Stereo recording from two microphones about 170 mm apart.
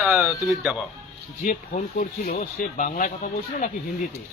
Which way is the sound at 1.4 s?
50° left (ahead or behind).